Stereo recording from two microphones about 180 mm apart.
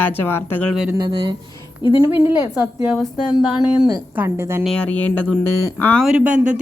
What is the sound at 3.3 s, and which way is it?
Speech, 25° left (ahead or behind).